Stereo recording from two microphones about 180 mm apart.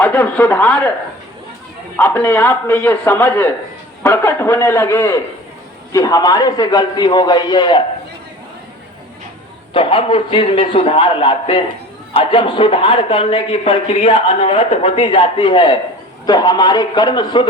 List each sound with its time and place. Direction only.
0.0 s a man's voice: 10° left (ahead or behind)
2.0 s a man's voice: 10° left (ahead or behind)
9.7 s a man's voice: 30° left (ahead or behind)